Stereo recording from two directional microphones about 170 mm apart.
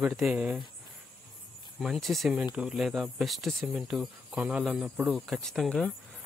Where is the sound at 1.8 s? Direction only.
Centre (ahead or behind).